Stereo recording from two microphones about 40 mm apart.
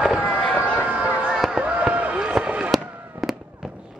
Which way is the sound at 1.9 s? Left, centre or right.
Right.